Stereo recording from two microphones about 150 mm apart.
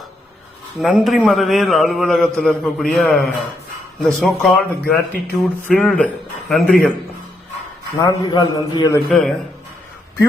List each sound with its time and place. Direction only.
0.8 s a man's voice: centre (ahead or behind)
7.9 s a man's voice: 30° left (ahead or behind)
9.0 s a man's voice: 5° left (ahead or behind)